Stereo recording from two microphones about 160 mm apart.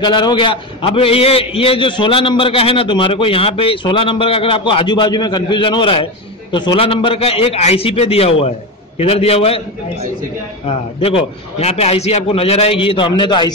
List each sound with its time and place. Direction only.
0.0 s a man's voice: 30° left (ahead or behind)
11.0 s a man's voice: 35° left (ahead or behind)